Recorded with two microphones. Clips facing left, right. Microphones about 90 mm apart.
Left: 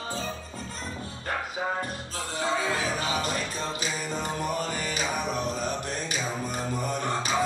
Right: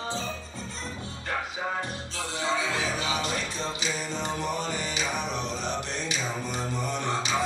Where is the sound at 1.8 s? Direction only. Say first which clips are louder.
Even; 45° left (ahead or behind).